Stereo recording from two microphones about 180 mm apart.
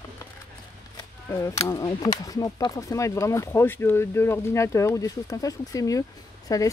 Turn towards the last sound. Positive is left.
turn(degrees=20)  # may be behind; listen again after turning